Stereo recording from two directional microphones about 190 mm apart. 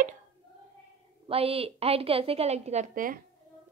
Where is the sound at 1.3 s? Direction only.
30° right (ahead or behind).